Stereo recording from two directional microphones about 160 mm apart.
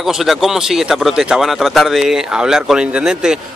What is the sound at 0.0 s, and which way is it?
Speech, centre (ahead or behind).